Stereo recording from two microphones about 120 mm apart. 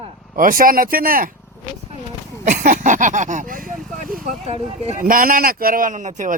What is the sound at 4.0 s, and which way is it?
Speech, 60° right (ahead or behind).